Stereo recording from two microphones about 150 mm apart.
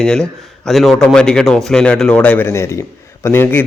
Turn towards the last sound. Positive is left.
turn(degrees=15)  # may be behind; listen again after turning